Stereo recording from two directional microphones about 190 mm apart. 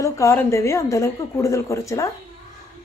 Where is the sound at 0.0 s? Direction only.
15° left (ahead or behind).